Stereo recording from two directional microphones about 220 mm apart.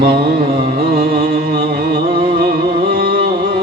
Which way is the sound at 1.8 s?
40° right (ahead or behind).